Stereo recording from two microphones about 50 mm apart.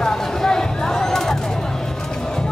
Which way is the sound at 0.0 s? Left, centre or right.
Centre.